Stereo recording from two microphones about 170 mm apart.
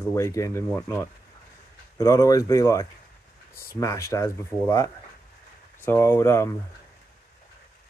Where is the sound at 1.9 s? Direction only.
20° left (ahead or behind).